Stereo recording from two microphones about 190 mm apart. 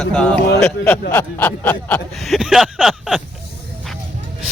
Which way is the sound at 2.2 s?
Centre (ahead or behind).